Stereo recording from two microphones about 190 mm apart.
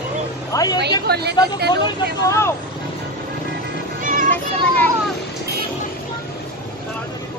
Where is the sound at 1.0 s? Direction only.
60° right (ahead or behind).